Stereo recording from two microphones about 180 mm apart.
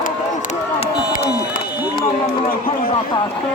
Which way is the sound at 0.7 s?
35° left (ahead or behind).